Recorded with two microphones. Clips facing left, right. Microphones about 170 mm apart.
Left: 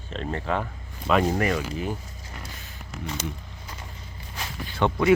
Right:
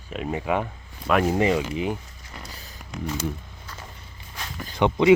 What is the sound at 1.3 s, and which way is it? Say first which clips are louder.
Speech: right 4 dB; 20° right (ahead or behind).